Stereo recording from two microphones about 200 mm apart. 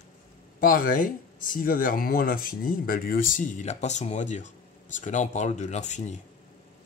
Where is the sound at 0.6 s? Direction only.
45° left (ahead or behind).